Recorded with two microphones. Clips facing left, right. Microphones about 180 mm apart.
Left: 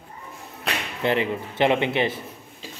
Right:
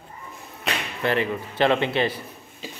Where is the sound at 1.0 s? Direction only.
20° left (ahead or behind).